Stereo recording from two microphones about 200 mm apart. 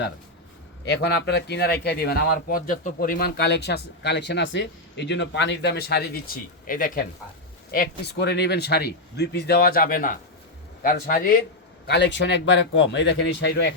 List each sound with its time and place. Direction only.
0.9 s speech: 55° left (ahead or behind)
11.9 s speech: 60° left (ahead or behind)